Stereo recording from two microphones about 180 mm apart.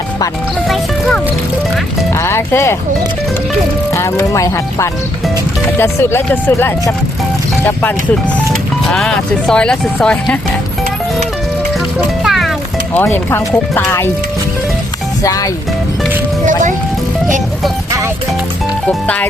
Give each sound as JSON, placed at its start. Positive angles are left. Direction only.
{"t": 2.1, "sound": "speech", "side_deg": 15}
{"t": 3.9, "sound": "speech", "side_deg": 15}
{"t": 8.9, "sound": "speech", "side_deg": 5}
{"t": 11.9, "sound": "music", "side_deg": 0}
{"t": 12.9, "sound": "speech", "side_deg": 10}
{"t": 15.2, "sound": "speech", "side_deg": 20}
{"t": 18.9, "sound": "speech", "side_deg": 5}